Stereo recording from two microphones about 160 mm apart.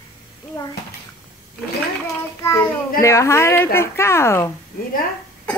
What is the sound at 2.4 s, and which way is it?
A woman's voice, 15° left (ahead or behind).